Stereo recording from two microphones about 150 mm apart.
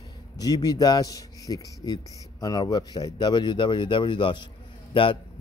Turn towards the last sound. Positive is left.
turn(degrees=35)  # may be behind; listen again after turning